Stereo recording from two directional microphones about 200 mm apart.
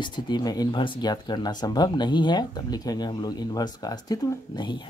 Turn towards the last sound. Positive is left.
turn(degrees=20)  # may be behind; listen again after turning